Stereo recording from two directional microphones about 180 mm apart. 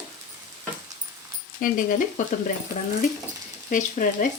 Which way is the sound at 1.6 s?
50° left (ahead or behind).